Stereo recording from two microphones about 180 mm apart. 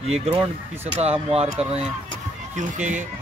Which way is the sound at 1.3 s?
35° right (ahead or behind).